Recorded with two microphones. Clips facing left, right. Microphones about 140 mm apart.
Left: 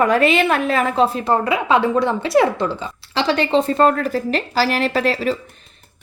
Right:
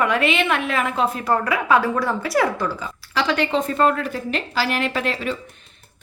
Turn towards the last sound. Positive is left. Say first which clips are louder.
# left 5 dB
turn(degrees=35)  # may be behind; listen again after turning